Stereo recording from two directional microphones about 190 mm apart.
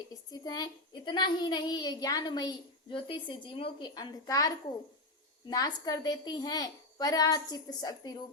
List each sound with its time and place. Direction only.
0.1 s a child's voice: 20° left (ahead or behind)